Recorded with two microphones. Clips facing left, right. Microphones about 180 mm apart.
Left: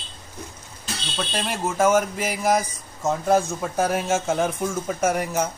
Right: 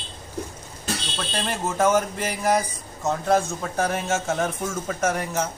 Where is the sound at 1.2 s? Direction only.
5° left (ahead or behind).